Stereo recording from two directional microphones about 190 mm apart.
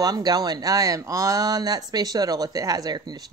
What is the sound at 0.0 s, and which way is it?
Speech, 20° right (ahead or behind).